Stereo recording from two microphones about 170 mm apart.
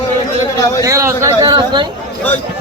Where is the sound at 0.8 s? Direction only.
15° right (ahead or behind).